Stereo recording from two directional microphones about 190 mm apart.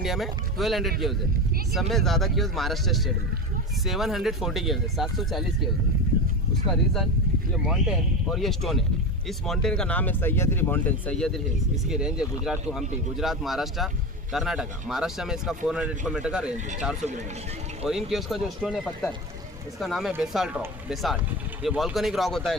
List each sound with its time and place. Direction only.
0.0 s speech: centre (ahead or behind)
6.7 s speech: centre (ahead or behind)
11.9 s speech: 5° right (ahead or behind)
17.0 s speech: 40° right (ahead or behind)
17.8 s speech: centre (ahead or behind)